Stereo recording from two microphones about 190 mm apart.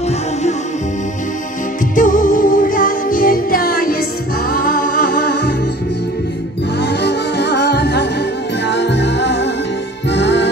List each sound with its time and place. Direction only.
2.0 s music: 45° left (ahead or behind)
6.8 s music: 60° left (ahead or behind)